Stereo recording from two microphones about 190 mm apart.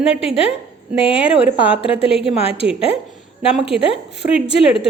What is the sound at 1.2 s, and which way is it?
Speech, 5° right (ahead or behind).